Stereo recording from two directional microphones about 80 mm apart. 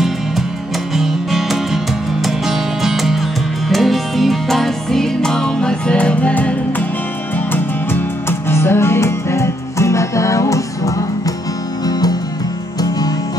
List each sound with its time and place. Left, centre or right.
0.9 s music: centre; by 10.6 s left